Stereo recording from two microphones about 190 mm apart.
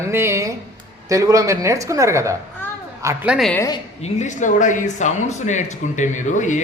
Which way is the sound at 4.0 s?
35° left (ahead or behind).